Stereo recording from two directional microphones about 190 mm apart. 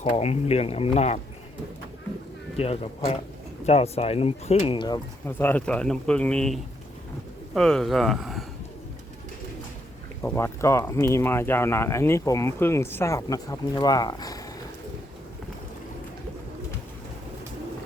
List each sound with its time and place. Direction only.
0.1 s speech: 35° left (ahead or behind)
2.6 s speech: 30° left (ahead or behind)
5.2 s speech: 10° left (ahead or behind)
10.2 s speech: 15° left (ahead or behind)